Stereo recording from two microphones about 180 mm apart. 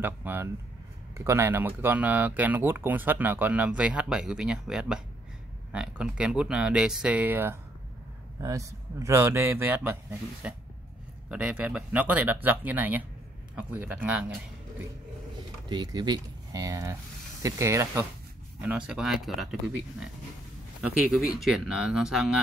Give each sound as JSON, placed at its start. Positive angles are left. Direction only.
{"t": 0.0, "sound": "speech", "side_deg": -10}
{"t": 15.7, "sound": "speech", "side_deg": -25}
{"t": 21.4, "sound": "speech", "side_deg": -5}